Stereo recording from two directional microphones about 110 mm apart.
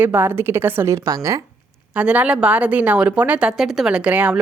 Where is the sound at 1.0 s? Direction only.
35° right (ahead or behind).